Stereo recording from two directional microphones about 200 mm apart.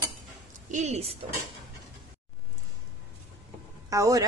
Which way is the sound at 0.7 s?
35° right (ahead or behind).